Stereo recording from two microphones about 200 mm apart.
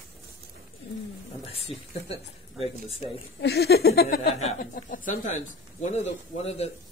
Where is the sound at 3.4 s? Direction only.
55° left (ahead or behind).